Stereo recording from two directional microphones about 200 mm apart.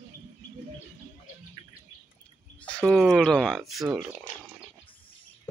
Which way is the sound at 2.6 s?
5° left (ahead or behind).